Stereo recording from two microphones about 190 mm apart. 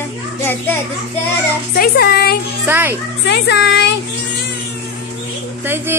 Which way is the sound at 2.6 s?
10° right (ahead or behind).